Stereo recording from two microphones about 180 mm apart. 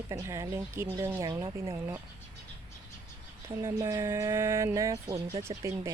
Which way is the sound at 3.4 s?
15° right (ahead or behind).